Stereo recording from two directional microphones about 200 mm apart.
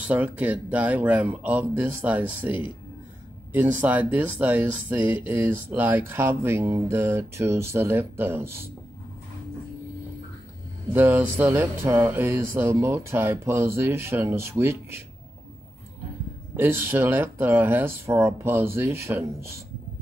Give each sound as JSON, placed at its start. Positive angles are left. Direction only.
{"t": 0.0, "sound": "speech", "side_deg": -10}
{"t": 10.9, "sound": "speech", "side_deg": -10}
{"t": 16.5, "sound": "speech", "side_deg": -10}